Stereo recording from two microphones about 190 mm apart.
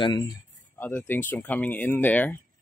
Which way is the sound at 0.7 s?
10° left (ahead or behind).